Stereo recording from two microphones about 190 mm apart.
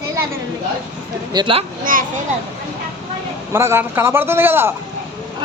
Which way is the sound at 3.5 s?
10° right (ahead or behind).